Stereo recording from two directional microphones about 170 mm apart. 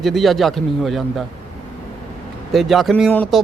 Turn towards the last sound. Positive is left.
turn(degrees=5)  # may be behind; listen again after turning